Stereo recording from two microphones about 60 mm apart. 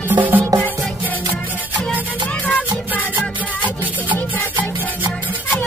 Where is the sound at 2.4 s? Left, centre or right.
Left.